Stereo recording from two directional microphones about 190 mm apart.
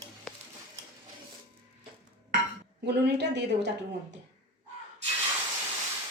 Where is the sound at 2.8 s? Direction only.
60° right (ahead or behind).